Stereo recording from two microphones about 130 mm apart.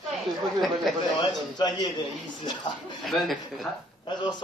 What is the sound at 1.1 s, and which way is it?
A man's voice, 35° left (ahead or behind).